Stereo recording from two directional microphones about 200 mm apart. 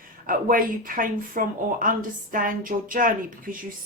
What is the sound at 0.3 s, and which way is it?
A woman's voice, 45° right (ahead or behind).